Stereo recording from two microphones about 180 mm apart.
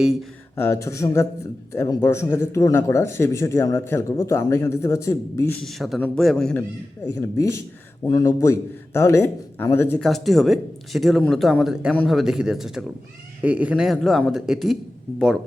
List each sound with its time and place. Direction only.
0.0 s speech: centre (ahead or behind)
0.5 s speech: 15° left (ahead or behind)
5.6 s speech: centre (ahead or behind)
10.1 s speech: centre (ahead or behind)